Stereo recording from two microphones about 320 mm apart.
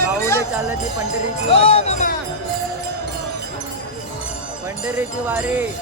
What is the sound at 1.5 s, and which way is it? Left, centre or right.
Speech, centre.